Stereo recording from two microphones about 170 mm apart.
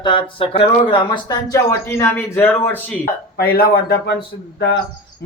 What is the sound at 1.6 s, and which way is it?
A man's voice, 15° left (ahead or behind).